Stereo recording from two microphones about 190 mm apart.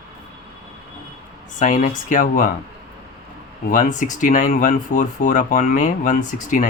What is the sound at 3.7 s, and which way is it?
Speech, 45° left (ahead or behind).